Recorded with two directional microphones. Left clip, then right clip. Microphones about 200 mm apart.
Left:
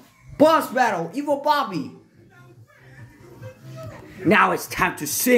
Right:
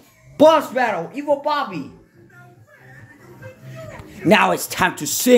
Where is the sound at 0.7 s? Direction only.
20° left (ahead or behind).